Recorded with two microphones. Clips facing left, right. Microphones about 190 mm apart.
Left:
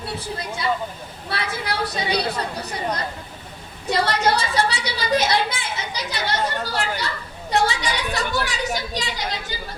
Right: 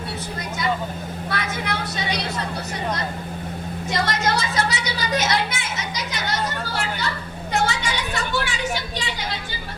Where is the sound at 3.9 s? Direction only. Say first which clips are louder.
Left 3 dB; 35° left (ahead or behind).